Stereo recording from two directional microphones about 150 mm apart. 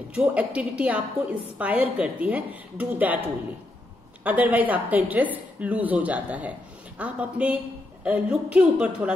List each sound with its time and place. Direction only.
0.1 s a woman's voice: 10° right (ahead or behind)
4.2 s a woman's voice: 10° right (ahead or behind)